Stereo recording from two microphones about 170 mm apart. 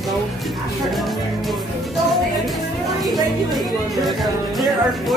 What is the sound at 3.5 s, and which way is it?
Speech, centre (ahead or behind).